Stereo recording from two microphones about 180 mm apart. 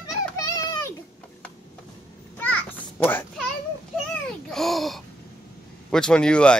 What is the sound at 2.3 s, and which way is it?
Children playing, 10° left (ahead or behind).